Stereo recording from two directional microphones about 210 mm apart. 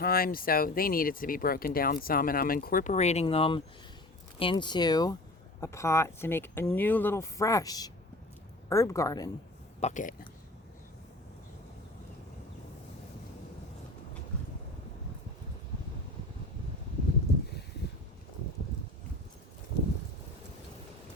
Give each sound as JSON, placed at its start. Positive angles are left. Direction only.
{"t": 0.0, "sound": "speech", "side_deg": 45}
{"t": 9.8, "sound": "speech", "side_deg": 35}